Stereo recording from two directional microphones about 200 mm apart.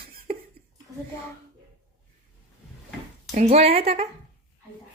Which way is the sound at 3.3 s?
30° right (ahead or behind).